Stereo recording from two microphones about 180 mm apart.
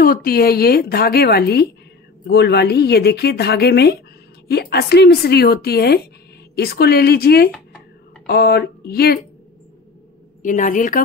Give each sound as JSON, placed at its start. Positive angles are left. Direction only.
{"t": 0.0, "sound": "speech", "side_deg": 55}
{"t": 10.4, "sound": "a woman's voice", "side_deg": 45}